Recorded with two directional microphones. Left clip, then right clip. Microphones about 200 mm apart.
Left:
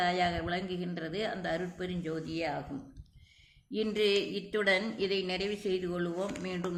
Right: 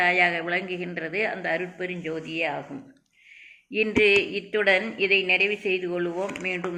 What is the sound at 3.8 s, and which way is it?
Speech, 20° left (ahead or behind).